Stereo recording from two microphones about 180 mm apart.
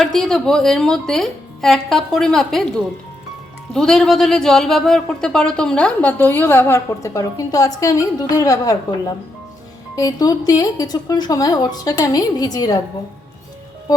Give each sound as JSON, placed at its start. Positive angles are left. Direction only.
{"t": 0.0, "sound": "a woman's voice", "side_deg": 0}
{"t": 3.7, "sound": "a woman's voice", "side_deg": 5}